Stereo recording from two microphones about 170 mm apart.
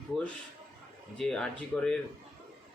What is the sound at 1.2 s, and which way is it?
Speech, 5° left (ahead or behind).